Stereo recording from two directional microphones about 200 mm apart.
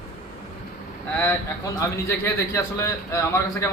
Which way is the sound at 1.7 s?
15° left (ahead or behind).